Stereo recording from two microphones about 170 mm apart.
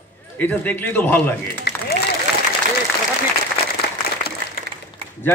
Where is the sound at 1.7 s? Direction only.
65° left (ahead or behind).